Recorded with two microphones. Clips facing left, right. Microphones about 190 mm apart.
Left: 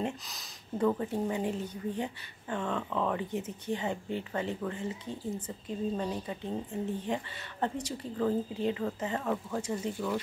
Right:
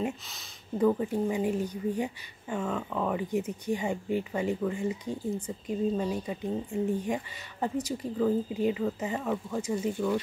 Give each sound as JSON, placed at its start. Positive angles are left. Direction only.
{"t": 0.0, "sound": "speech", "side_deg": -5}